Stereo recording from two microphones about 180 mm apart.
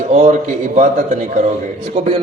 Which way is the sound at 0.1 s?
40° right (ahead or behind).